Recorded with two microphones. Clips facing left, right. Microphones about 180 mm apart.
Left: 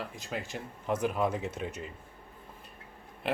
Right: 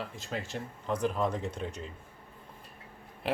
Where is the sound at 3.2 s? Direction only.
Centre (ahead or behind).